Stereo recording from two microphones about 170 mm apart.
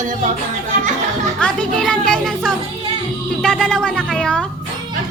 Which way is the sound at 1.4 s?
5° left (ahead or behind).